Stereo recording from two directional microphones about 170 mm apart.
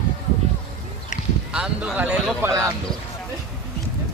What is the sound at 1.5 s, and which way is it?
Music, 5° right (ahead or behind).